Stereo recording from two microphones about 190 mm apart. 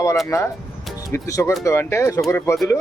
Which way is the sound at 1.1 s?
15° left (ahead or behind).